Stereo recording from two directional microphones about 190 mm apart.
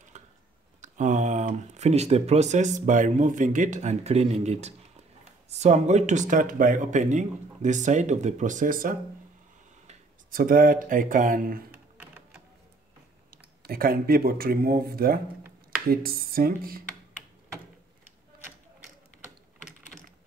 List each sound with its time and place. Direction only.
0.1 s a sound: 40° right (ahead or behind)
0.7 s speech: 40° right (ahead or behind)
11.7 s typing: 10° right (ahead or behind)
13.6 s speech: 50° right (ahead or behind)